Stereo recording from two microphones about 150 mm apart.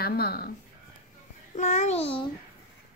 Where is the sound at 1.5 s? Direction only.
50° left (ahead or behind).